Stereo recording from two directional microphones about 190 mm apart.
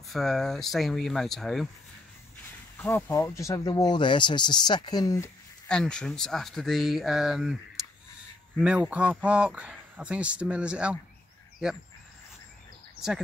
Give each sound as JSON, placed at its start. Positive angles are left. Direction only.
{"t": 0.1, "sound": "speech", "side_deg": 0}
{"t": 2.8, "sound": "speech", "side_deg": 15}
{"t": 5.7, "sound": "a man's voice", "side_deg": 5}